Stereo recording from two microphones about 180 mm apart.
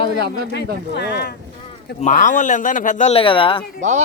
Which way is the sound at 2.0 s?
40° left (ahead or behind).